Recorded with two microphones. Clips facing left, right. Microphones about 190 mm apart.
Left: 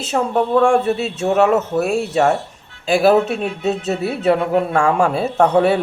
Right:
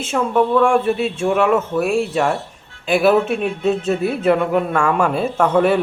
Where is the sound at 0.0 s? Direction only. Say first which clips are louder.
Right 1 dB; 40° left (ahead or behind).